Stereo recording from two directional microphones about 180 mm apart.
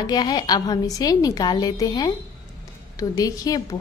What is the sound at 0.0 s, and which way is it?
A woman's voice, 20° left (ahead or behind).